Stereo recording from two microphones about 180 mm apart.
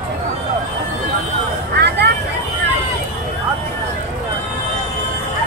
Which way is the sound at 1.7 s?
65° right (ahead or behind).